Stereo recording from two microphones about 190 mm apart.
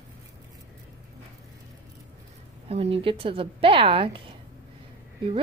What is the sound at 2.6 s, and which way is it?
Speech, 30° right (ahead or behind).